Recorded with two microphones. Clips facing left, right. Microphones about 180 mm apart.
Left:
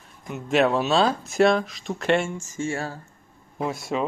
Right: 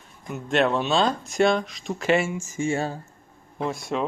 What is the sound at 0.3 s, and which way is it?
A man's voice, centre (ahead or behind).